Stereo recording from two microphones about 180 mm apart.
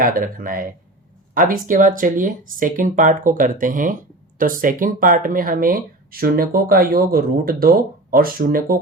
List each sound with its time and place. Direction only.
0.0 s speech: 50° right (ahead or behind)